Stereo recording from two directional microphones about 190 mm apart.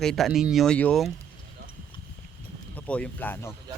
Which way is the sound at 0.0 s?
Centre (ahead or behind).